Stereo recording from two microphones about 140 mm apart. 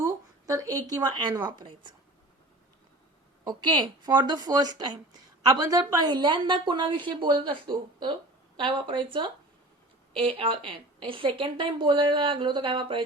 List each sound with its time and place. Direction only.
0.0 s a sound: 25° right (ahead or behind)
1.5 s a woman's voice: 35° right (ahead or behind)
3.4 s a woman's voice: 30° right (ahead or behind)